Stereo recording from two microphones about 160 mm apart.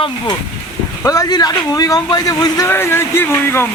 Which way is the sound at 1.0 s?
20° left (ahead or behind).